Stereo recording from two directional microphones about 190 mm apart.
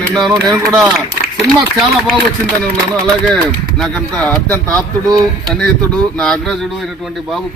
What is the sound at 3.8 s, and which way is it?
A man's voice, 5° left (ahead or behind).